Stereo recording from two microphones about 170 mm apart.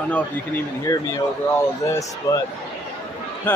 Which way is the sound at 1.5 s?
15° left (ahead or behind).